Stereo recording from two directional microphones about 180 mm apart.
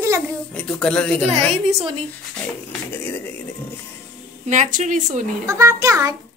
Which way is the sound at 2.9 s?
10° left (ahead or behind).